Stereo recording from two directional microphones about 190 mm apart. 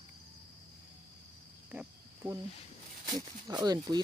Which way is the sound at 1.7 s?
10° right (ahead or behind).